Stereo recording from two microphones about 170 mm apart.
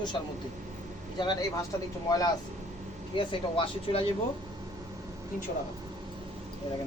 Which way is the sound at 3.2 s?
30° left (ahead or behind).